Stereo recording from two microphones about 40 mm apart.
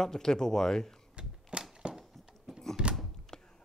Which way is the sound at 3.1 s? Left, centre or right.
Centre.